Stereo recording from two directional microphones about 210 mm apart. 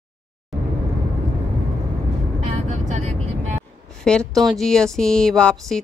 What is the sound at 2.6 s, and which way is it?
Vehicle, 35° right (ahead or behind).